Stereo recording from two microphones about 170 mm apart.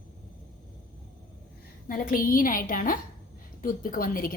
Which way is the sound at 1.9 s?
55° left (ahead or behind).